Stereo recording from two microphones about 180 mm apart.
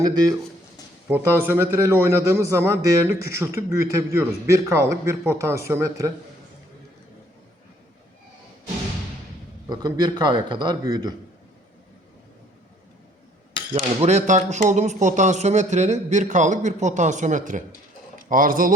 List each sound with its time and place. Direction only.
0.0 s a man's voice: 20° right (ahead or behind)
9.6 s a man's voice: 20° right (ahead or behind)
13.7 s speech: 35° right (ahead or behind)